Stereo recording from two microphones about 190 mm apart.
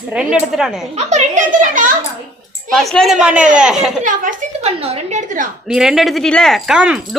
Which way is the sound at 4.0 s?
45° right (ahead or behind).